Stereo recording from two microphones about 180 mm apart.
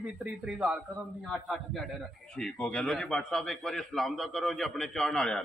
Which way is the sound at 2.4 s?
5° left (ahead or behind).